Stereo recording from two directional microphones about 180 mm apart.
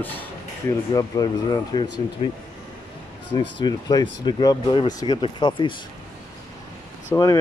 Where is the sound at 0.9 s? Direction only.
25° left (ahead or behind).